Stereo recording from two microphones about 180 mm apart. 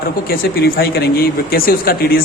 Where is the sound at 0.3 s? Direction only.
60° left (ahead or behind).